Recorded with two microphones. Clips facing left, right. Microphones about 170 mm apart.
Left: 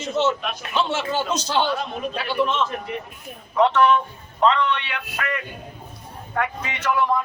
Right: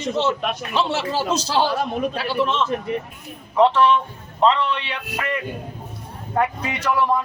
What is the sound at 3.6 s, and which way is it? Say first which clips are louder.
A man's voice: right 1 dB; 30° right (ahead or behind).